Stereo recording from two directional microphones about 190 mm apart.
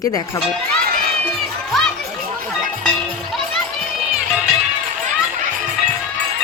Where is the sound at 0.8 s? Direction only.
55° right (ahead or behind).